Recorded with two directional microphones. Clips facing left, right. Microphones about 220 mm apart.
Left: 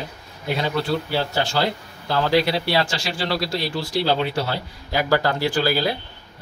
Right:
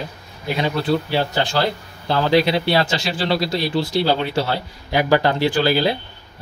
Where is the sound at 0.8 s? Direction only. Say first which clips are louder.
Right 4 dB; 20° right (ahead or behind).